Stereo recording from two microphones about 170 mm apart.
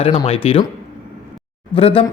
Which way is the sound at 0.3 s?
35° left (ahead or behind).